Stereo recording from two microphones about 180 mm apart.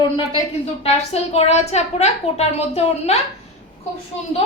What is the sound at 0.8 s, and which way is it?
A woman's voice, 35° left (ahead or behind).